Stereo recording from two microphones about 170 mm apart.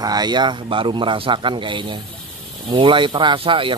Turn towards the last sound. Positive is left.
turn(degrees=-30)  # may be behind; listen again after turning